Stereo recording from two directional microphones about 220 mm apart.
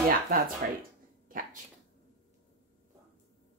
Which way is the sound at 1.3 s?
40° right (ahead or behind).